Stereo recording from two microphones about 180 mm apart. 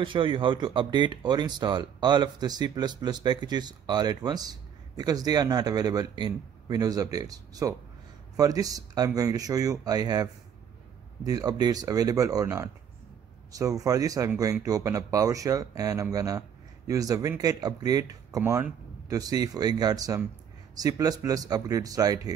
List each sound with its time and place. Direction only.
0.0 s speech: 30° right (ahead or behind)